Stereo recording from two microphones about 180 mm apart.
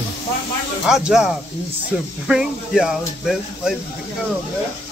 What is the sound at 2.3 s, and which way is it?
Speech, 5° right (ahead or behind).